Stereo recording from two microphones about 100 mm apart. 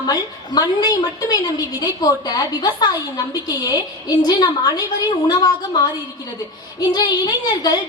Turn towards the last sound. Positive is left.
turn(degrees=40)  # may be behind; listen again after turning